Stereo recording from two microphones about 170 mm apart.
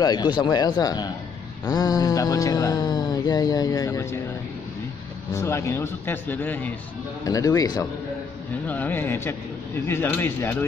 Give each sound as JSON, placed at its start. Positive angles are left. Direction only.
{"t": 0.0, "sound": "speech", "side_deg": 25}
{"t": 5.3, "sound": "a man's voice", "side_deg": 15}
{"t": 7.2, "sound": "speech", "side_deg": 20}
{"t": 8.6, "sound": "a man's voice", "side_deg": 10}